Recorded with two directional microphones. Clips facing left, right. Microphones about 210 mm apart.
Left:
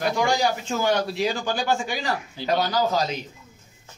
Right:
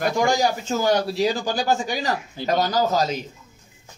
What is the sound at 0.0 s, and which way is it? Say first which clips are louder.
Speech: right 2 dB; 45° right (ahead or behind).